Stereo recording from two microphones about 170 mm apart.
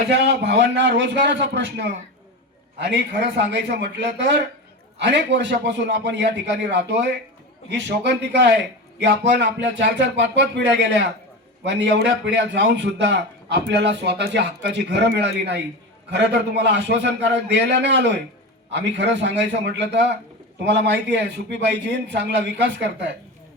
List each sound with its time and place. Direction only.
0.1 s a man's voice: 80° right